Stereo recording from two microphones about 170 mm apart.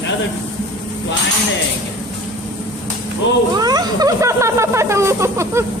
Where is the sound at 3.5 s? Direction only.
25° right (ahead or behind).